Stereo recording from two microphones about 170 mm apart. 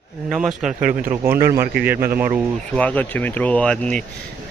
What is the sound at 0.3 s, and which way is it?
Speech, 5° right (ahead or behind).